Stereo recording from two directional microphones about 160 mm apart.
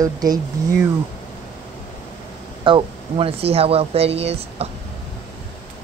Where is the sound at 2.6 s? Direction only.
35° right (ahead or behind).